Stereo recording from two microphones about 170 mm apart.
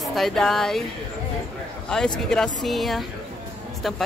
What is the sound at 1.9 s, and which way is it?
A man's voice, 5° left (ahead or behind).